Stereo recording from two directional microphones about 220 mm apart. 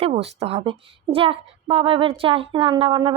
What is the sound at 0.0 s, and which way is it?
Speech, 25° right (ahead or behind).